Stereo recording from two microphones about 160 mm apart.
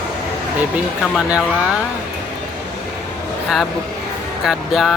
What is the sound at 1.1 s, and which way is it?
Speech, centre (ahead or behind).